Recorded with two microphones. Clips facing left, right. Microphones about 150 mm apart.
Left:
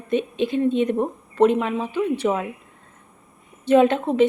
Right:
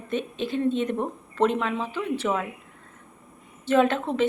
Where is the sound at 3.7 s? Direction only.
20° left (ahead or behind).